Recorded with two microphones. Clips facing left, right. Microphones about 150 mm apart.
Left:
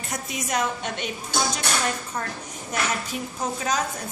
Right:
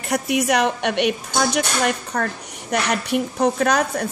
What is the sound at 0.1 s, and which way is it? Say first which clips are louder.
A woman's voice: right 10 dB; 70° right (ahead or behind).